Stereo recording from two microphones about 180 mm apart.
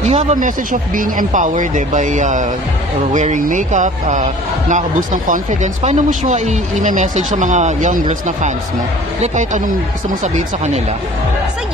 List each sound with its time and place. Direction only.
0.0 s a man's voice: 40° right (ahead or behind)
9.2 s a man's voice: 40° right (ahead or behind)